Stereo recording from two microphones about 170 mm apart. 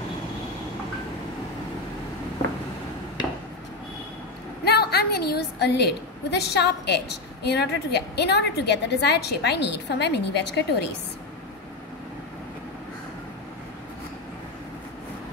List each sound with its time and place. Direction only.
4.6 s a woman's voice: 70° left (ahead or behind); by 10.9 s 85° left